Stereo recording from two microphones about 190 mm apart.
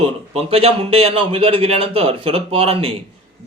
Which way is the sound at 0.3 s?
30° right (ahead or behind).